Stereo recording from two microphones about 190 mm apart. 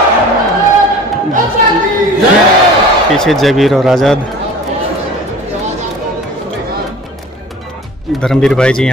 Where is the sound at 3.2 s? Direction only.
Centre (ahead or behind).